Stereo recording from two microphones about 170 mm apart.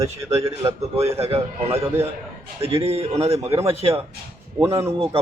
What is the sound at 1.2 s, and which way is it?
Speech, 35° right (ahead or behind).